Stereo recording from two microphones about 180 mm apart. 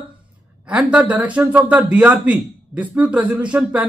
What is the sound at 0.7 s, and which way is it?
Speech, 5° right (ahead or behind).